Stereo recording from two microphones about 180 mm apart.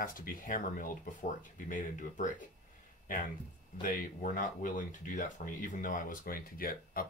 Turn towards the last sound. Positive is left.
turn(degrees=55)  # may be behind; listen again after turning